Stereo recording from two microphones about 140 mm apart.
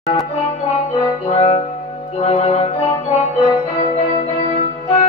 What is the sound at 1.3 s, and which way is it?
Music, 45° left (ahead or behind).